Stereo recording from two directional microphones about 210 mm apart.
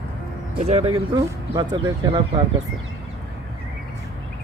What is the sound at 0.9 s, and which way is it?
Speech, 15° right (ahead or behind).